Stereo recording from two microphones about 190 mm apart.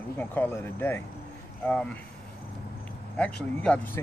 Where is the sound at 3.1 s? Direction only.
5° left (ahead or behind).